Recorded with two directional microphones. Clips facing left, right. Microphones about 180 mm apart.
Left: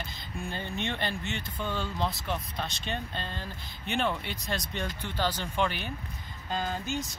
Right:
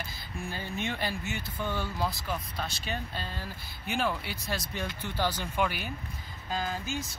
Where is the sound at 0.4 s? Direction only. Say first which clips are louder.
Left 1 dB; 5° right (ahead or behind).